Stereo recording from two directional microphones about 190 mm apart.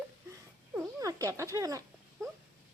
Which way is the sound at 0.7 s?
15° right (ahead or behind).